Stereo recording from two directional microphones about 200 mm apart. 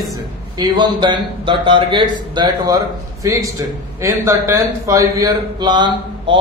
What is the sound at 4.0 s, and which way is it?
A man's voice, 15° right (ahead or behind).